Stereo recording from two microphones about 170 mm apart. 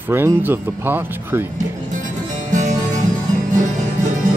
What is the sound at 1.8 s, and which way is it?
Music, 45° right (ahead or behind).